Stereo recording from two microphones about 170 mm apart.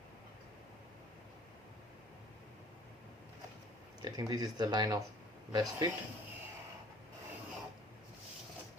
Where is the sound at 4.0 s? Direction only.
25° right (ahead or behind).